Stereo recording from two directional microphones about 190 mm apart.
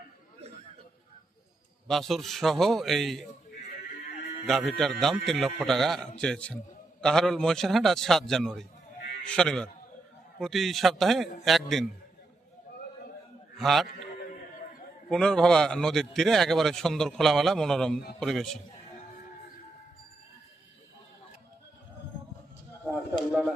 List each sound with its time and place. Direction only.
1.9 s a man's voice: centre (ahead or behind)
4.4 s a man's voice: centre (ahead or behind)
13.6 s a man's voice: centre (ahead or behind)
13.8 s a sound: 50° left (ahead or behind)
15.1 s a man's voice: 5° left (ahead or behind)